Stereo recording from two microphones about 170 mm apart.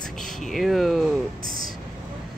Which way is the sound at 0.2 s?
Centre (ahead or behind).